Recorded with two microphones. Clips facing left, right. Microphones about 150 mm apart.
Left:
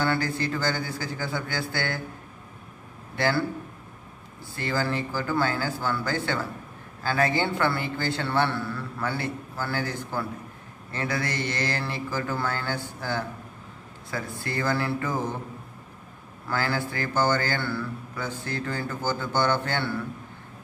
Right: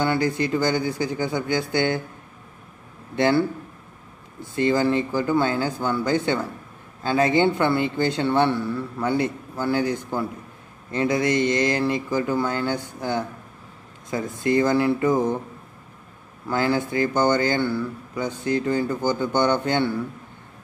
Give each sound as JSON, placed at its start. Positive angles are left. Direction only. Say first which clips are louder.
{"t": 0.0, "sound": "speech", "louder": "right 4 dB", "side_deg": -15}
{"t": 3.2, "sound": "a man's voice", "louder": "right 6 dB", "side_deg": -20}
{"t": 16.4, "sound": "speech", "louder": "right 6 dB", "side_deg": -20}